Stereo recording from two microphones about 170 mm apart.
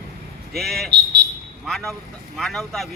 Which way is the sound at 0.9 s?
75° right (ahead or behind).